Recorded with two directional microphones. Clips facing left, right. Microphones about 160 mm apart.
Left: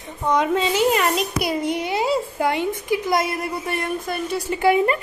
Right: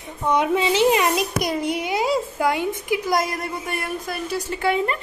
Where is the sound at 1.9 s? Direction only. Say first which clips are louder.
Even; 15° right (ahead or behind).